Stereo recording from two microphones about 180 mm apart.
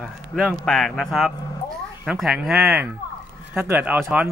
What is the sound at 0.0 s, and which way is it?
A man's voice, 5° left (ahead or behind).